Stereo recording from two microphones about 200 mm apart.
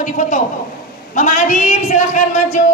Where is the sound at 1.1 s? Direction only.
40° left (ahead or behind).